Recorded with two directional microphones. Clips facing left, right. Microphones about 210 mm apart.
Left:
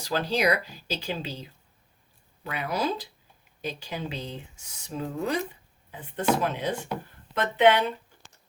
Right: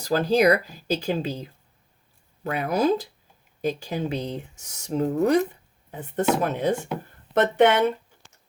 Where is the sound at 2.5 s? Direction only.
50° right (ahead or behind).